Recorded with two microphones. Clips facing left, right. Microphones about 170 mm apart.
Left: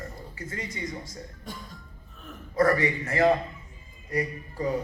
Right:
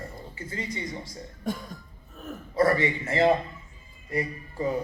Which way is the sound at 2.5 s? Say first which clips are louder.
Even; 25° right (ahead or behind).